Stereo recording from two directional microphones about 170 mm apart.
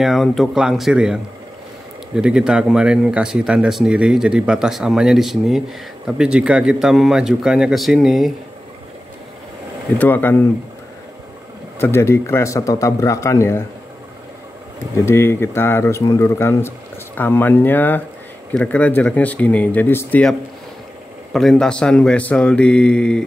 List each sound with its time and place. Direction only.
0.0 s speech: centre (ahead or behind)
9.9 s speech: 10° left (ahead or behind)
11.8 s speech: 15° left (ahead or behind)
15.0 s speech: 15° left (ahead or behind)